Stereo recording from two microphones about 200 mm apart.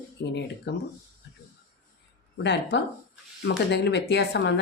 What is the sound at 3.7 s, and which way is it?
Speech, 60° left (ahead or behind).